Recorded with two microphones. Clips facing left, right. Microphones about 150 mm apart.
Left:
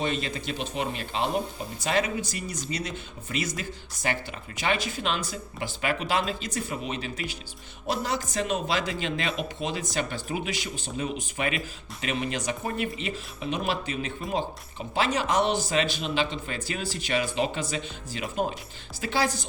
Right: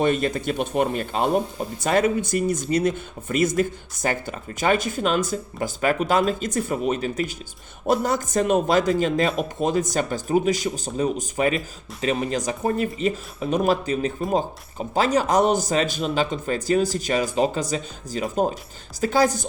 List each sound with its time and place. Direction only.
0.0 s a man's voice: 50° right (ahead or behind)